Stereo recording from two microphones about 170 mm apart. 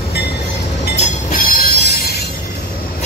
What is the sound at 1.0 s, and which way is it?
Train, 55° left (ahead or behind).